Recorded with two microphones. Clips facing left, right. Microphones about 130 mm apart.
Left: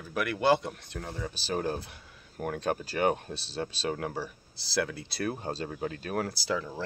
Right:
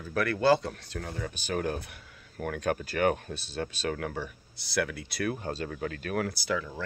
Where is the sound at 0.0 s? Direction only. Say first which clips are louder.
Right 2 dB; 10° left (ahead or behind).